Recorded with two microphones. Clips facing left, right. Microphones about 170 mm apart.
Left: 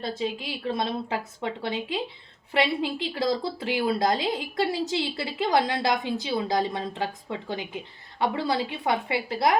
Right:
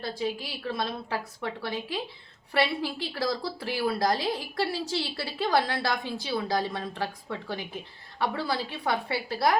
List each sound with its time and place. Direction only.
0.0 s a woman's voice: 25° left (ahead or behind)